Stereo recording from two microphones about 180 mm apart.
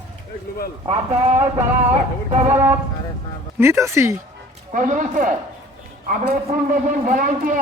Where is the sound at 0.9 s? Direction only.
35° right (ahead or behind).